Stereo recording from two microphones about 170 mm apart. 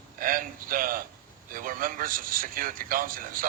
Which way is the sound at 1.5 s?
55° right (ahead or behind).